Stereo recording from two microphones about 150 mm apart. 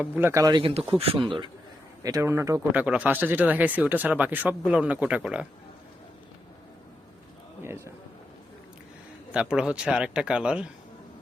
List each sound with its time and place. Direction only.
0.0 s speech: 15° right (ahead or behind)
0.5 s speech: 40° right (ahead or behind)
2.0 s speech: 20° right (ahead or behind)
2.7 s speech: 10° right (ahead or behind)
7.6 s a sound: 15° right (ahead or behind)
9.3 s speech: 5° right (ahead or behind)